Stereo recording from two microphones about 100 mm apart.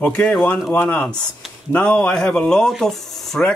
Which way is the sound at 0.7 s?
20° left (ahead or behind).